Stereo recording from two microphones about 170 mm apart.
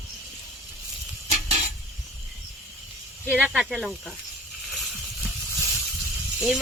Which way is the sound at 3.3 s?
5° right (ahead or behind).